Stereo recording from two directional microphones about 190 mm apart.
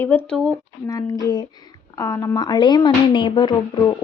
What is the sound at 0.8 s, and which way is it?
Speech, 20° left (ahead or behind).